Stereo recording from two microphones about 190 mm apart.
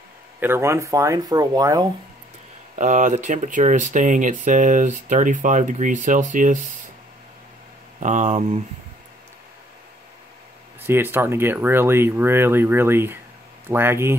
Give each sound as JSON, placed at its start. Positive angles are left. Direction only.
{"t": 0.4, "sound": "speech", "side_deg": -15}
{"t": 2.7, "sound": "speech", "side_deg": -40}
{"t": 8.0, "sound": "speech", "side_deg": -40}
{"t": 10.8, "sound": "speech", "side_deg": -10}